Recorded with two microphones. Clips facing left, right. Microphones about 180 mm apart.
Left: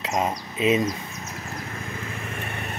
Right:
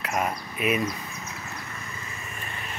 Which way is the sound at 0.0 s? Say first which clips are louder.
Left 3 dB; 20° left (ahead or behind).